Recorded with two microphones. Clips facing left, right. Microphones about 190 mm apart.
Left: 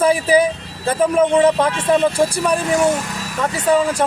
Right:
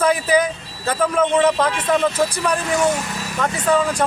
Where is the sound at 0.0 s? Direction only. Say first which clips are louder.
Left 3 dB; 10° left (ahead or behind).